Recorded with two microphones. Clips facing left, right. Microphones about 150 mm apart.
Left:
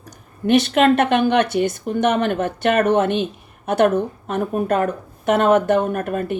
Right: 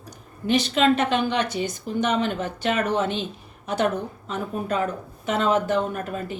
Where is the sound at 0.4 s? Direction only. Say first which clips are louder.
Left 5 dB; 60° left (ahead or behind).